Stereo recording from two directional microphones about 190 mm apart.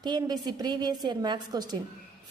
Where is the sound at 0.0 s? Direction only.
20° right (ahead or behind).